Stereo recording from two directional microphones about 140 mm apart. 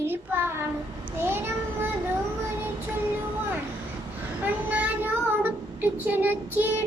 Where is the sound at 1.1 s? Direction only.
15° right (ahead or behind).